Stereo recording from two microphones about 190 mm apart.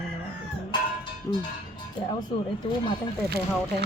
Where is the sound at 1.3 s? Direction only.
15° left (ahead or behind).